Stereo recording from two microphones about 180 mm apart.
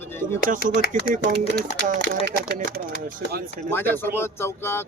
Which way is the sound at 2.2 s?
65° right (ahead or behind).